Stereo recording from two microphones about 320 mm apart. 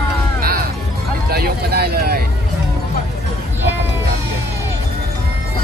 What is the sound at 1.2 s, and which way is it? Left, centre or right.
Vehicle, right.